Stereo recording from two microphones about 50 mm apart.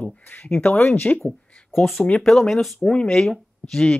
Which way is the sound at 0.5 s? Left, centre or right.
Left.